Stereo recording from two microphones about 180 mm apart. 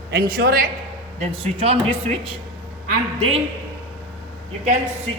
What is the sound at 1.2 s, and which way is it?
Speech, 35° right (ahead or behind).